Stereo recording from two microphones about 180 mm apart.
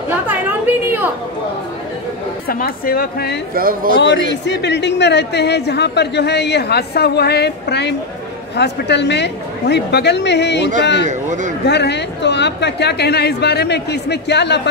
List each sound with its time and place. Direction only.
0.3 s a sound: 10° right (ahead or behind)
2.4 s speech: 55° left (ahead or behind)
3.5 s speech: 50° right (ahead or behind)
4.0 s speech: 75° left (ahead or behind)
11.1 s speech: 45° right (ahead or behind)
11.6 s speech: 70° left (ahead or behind)